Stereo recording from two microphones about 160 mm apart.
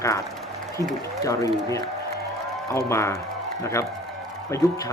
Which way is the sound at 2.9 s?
20° left (ahead or behind).